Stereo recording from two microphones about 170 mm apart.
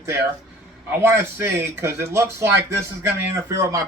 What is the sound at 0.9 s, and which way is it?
Speech, 15° right (ahead or behind).